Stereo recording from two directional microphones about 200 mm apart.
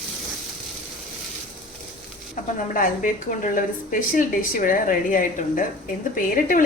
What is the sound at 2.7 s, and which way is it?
A woman's voice, 40° left (ahead or behind).